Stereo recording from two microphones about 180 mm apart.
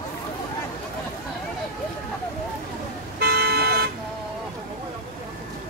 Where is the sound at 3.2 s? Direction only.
60° right (ahead or behind).